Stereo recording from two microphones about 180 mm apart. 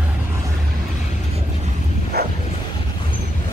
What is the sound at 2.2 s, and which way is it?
Bow-wow, 60° right (ahead or behind).